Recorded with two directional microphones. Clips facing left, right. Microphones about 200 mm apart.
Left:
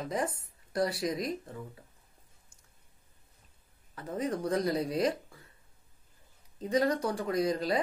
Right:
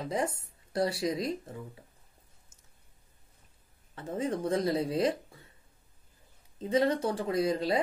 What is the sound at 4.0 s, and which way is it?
Speech, 25° right (ahead or behind).